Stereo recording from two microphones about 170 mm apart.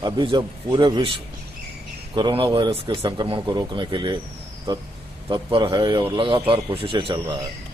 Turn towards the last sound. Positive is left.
turn(degrees=-30)  # may be behind; listen again after turning